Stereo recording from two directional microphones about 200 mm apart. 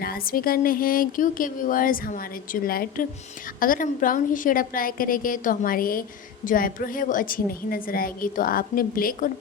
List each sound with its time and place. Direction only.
0.0 s a woman's voice: 45° left (ahead or behind)